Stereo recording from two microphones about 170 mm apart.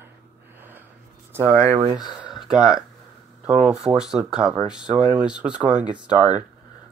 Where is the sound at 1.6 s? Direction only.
35° right (ahead or behind).